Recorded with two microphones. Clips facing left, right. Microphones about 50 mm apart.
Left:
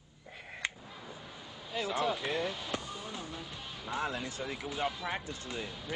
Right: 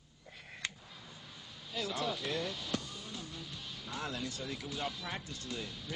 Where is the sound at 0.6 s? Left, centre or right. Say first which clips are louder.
Left 4 dB; left.